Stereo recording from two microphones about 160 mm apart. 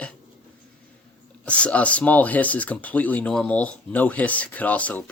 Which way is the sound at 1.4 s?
10° left (ahead or behind).